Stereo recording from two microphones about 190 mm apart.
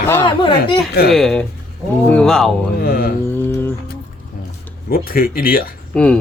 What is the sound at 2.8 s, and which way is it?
Speech, 50° left (ahead or behind).